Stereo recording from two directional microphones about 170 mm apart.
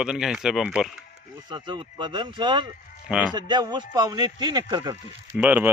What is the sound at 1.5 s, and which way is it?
Speech, 30° right (ahead or behind).